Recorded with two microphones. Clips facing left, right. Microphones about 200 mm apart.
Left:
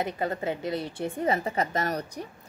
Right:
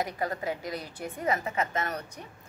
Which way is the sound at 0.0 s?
25° left (ahead or behind).